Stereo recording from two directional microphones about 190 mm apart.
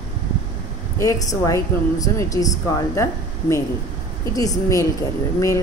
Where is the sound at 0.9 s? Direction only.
15° left (ahead or behind).